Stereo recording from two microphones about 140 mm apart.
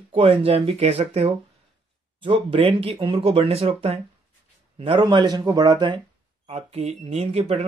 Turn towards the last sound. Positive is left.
turn(degrees=-45)  # may be behind; listen again after turning